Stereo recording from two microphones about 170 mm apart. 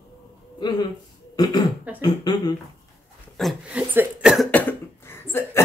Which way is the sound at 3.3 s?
5° right (ahead or behind).